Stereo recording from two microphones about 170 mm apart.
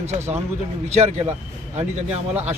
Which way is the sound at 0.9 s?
40° right (ahead or behind).